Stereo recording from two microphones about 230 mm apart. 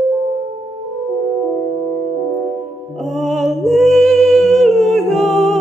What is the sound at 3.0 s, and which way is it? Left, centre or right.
Music, centre.